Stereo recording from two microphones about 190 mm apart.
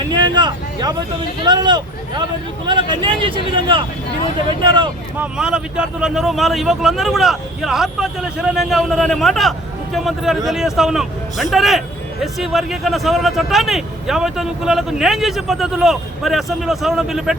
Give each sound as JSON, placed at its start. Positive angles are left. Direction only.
{"t": 0.2, "sound": "a sound", "side_deg": -25}
{"t": 1.5, "sound": "speech", "side_deg": -20}
{"t": 5.1, "sound": "speech", "side_deg": -5}